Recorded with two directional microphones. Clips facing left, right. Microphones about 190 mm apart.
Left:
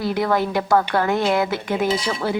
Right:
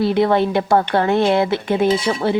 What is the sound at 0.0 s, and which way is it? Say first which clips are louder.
Speech: right 5 dB; 25° right (ahead or behind).